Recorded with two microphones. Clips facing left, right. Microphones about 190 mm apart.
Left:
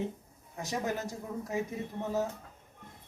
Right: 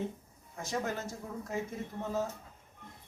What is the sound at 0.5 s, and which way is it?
Speech, 15° left (ahead or behind).